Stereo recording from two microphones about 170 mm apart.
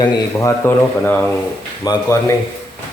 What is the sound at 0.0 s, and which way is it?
Speech, 15° left (ahead or behind).